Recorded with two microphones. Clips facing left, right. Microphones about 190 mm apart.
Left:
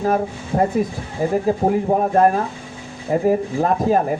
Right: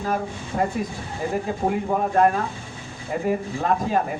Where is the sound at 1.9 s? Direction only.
40° left (ahead or behind).